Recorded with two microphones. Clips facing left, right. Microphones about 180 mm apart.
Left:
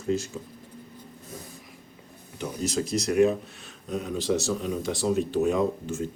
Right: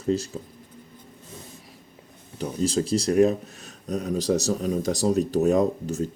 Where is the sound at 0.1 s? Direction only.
35° right (ahead or behind).